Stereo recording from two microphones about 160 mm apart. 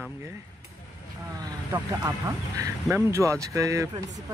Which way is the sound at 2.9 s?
20° right (ahead or behind).